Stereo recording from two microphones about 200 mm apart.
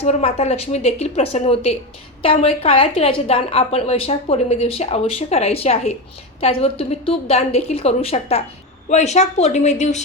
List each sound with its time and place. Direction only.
0.0 s a woman's voice: 30° left (ahead or behind)